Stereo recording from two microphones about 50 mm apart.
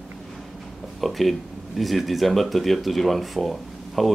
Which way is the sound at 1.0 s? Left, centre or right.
Centre.